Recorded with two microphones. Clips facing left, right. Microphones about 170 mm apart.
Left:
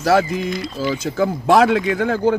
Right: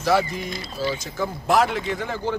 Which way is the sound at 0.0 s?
90° left.